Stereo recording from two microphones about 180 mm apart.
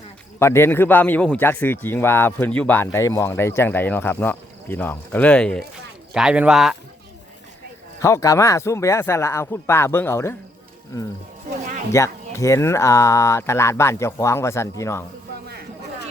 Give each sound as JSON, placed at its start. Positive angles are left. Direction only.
{"t": 0.3, "sound": "speech", "side_deg": 15}
{"t": 6.1, "sound": "speech", "side_deg": -5}
{"t": 8.0, "sound": "speech", "side_deg": 15}
{"t": 11.9, "sound": "speech", "side_deg": 15}